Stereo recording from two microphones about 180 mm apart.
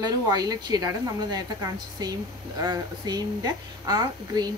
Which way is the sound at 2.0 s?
20° right (ahead or behind).